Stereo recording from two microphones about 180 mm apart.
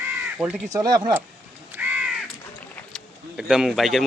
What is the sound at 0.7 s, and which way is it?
Speech, 20° right (ahead or behind).